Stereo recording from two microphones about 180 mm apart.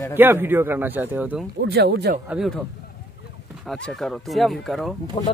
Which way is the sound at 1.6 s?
65° right (ahead or behind).